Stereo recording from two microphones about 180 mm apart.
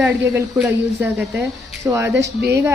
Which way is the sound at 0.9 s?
10° right (ahead or behind).